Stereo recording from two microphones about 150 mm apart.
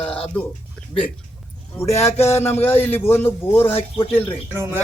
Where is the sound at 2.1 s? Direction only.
45° left (ahead or behind).